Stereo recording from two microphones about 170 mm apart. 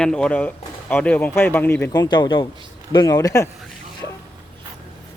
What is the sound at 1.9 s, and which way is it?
Speech, 25° left (ahead or behind).